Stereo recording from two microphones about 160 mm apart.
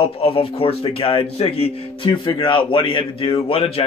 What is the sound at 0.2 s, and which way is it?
Speech, 35° left (ahead or behind).